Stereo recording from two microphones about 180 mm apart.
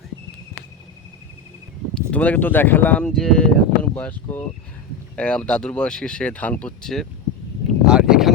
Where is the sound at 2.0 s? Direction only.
5° left (ahead or behind).